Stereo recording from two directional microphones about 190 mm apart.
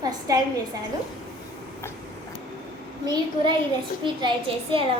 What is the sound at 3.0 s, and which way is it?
A woman's voice, 20° right (ahead or behind).